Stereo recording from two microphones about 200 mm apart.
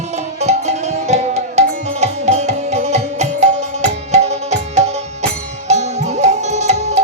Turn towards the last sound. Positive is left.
turn(degrees=-35)  # may be behind; listen again after turning